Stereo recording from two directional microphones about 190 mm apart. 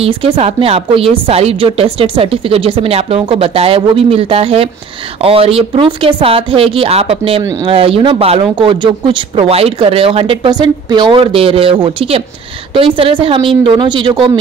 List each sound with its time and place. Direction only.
0.0 s a woman's voice: 30° right (ahead or behind)